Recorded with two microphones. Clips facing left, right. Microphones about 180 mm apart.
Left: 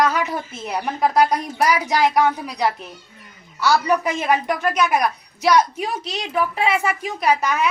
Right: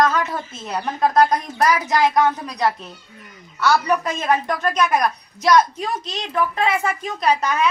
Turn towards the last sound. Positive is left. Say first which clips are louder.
# even
turn(degrees=10)  # may be behind; listen again after turning